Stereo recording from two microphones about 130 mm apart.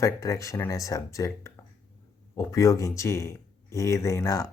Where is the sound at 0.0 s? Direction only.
25° left (ahead or behind).